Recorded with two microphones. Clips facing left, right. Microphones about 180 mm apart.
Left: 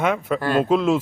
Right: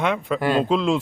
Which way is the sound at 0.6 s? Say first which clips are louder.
Left 2 dB; 5° left (ahead or behind).